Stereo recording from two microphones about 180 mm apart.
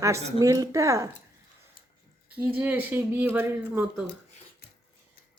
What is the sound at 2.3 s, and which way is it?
Speech, 10° right (ahead or behind).